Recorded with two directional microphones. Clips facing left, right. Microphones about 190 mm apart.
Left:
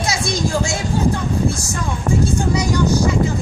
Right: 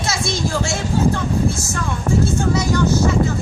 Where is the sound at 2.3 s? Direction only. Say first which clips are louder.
Even; 15° left (ahead or behind).